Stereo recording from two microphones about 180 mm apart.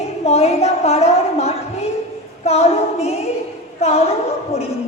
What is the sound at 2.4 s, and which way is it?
A woman's voice, 35° left (ahead or behind).